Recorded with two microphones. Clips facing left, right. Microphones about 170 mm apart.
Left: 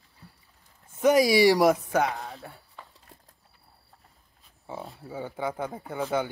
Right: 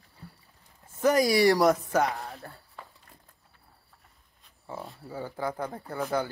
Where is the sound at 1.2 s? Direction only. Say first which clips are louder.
Left 2 dB; centre (ahead or behind).